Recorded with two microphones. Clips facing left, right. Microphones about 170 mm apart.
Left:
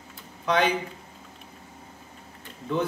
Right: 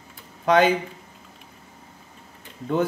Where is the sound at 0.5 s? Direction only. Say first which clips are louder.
Right 6 dB; 45° right (ahead or behind).